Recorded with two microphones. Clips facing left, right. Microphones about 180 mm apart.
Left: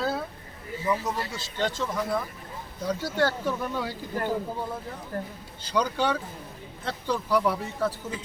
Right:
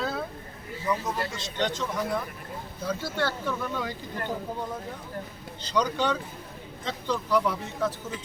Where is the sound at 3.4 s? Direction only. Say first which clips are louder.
Left 2 dB; 10° left (ahead or behind).